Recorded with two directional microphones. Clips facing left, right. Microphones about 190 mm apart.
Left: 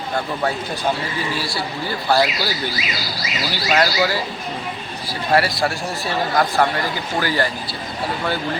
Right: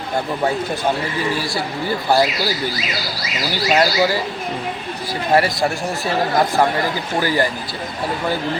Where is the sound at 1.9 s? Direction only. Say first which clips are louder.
Right 2 dB; 20° right (ahead or behind).